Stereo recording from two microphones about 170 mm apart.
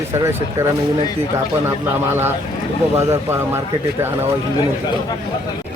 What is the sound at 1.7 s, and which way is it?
Speech, 15° right (ahead or behind).